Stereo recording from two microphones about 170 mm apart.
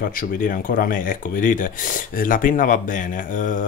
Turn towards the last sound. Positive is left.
turn(degrees=50)  # may be behind; listen again after turning